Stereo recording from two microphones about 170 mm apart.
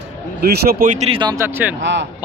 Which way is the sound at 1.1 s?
25° right (ahead or behind).